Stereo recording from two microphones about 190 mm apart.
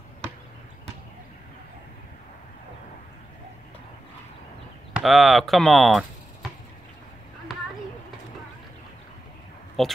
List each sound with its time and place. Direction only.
4.9 s speech: centre (ahead or behind)
9.8 s speech: centre (ahead or behind)